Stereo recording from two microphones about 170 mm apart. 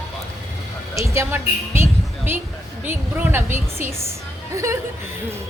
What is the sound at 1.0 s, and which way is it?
A woman's voice, 15° right (ahead or behind).